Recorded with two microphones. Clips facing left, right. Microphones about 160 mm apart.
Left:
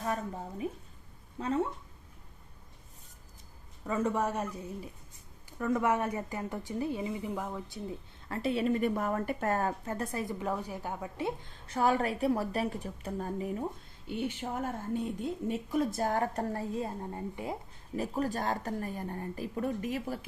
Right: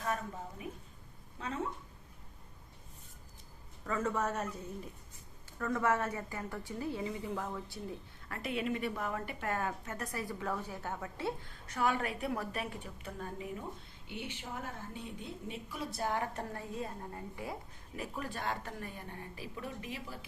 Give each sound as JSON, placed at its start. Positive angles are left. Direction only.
{"t": 1.4, "sound": "a woman's voice", "side_deg": 40}
{"t": 3.8, "sound": "speech", "side_deg": 15}
{"t": 5.5, "sound": "a woman's voice", "side_deg": 15}
{"t": 11.6, "sound": "a woman's voice", "side_deg": 30}
{"t": 17.9, "sound": "a woman's voice", "side_deg": 40}